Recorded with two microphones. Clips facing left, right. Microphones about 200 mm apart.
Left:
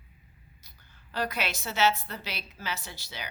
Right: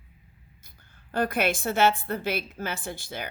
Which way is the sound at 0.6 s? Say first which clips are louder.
Right 2 dB; 50° right (ahead or behind).